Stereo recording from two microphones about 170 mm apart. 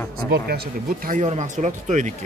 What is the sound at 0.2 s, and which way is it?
Speech, 15° left (ahead or behind).